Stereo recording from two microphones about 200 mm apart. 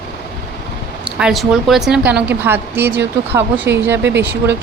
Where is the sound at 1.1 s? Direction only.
Centre (ahead or behind).